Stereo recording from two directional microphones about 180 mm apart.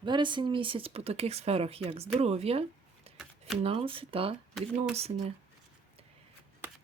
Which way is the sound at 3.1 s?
35° right (ahead or behind).